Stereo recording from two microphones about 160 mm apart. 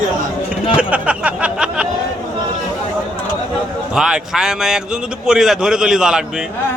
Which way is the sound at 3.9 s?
5° right (ahead or behind).